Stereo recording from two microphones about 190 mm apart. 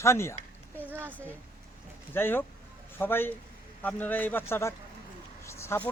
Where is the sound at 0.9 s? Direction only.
10° right (ahead or behind).